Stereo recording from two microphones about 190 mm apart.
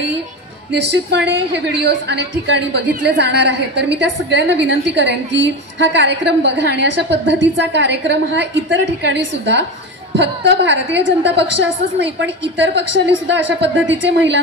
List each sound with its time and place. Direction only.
0.7 s a woman's voice: 65° right (ahead or behind)